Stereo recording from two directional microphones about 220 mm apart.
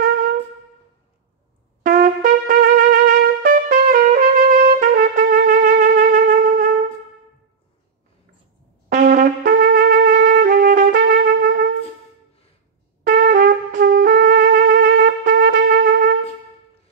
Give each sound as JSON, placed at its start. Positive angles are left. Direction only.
{"t": 1.8, "sound": "trumpet", "side_deg": -35}
{"t": 8.8, "sound": "trumpet", "side_deg": -40}
{"t": 13.0, "sound": "trumpet", "side_deg": -40}